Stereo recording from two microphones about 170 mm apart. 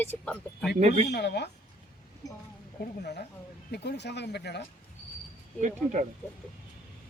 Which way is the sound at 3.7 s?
80° left.